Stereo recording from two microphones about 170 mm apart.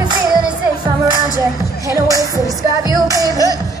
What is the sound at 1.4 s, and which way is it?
Music, 20° right (ahead or behind).